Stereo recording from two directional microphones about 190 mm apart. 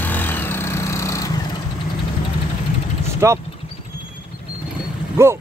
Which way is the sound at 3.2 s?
15° right (ahead or behind).